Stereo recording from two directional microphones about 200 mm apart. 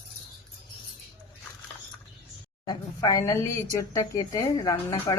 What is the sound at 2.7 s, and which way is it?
A woman's voice, 15° left (ahead or behind).